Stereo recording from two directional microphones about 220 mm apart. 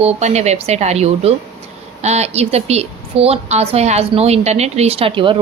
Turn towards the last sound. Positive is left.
turn(degrees=-25)  # may be behind; listen again after turning